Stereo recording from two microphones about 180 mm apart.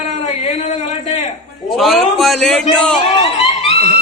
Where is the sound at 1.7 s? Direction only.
Centre (ahead or behind).